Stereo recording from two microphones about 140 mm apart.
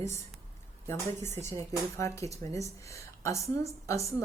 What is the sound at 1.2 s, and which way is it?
Speech, 20° left (ahead or behind).